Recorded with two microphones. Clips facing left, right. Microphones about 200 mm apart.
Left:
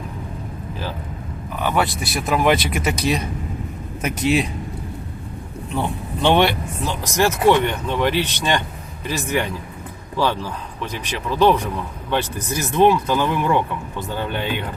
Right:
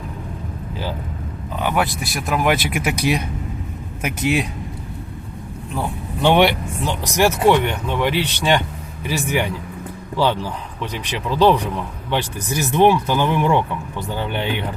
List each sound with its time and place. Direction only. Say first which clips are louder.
1.5 s vehicle: even; 15° right (ahead or behind)
1.8 s speech: even; centre (ahead or behind)
5.7 s speech: left 1 dB; 10° right (ahead or behind)
10.8 s speech: right 1 dB; 15° right (ahead or behind)